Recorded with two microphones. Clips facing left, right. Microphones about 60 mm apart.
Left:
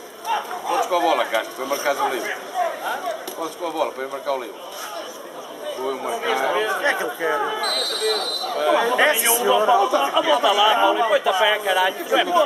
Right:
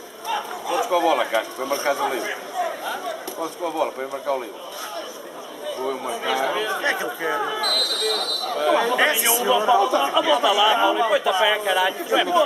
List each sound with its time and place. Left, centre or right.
0.3 s run: centre
0.8 s speech: right
1.7 s a man's voice: centre
2.1 s a sound: centre
3.6 s speech: right
6.3 s speech: left
6.8 s speech: centre
10.3 s speech: centre